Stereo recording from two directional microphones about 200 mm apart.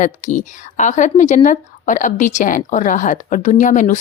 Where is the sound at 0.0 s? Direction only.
40° left (ahead or behind).